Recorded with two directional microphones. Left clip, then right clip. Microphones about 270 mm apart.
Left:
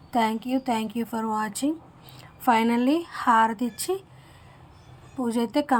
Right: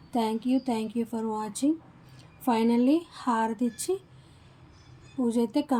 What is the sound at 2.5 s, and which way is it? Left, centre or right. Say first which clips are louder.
Speech: left 6 dB; left.